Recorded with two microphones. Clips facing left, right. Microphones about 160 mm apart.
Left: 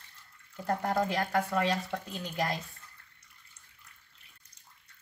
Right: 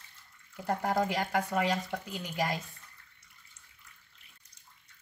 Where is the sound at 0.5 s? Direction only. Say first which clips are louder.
Even; 10° right (ahead or behind).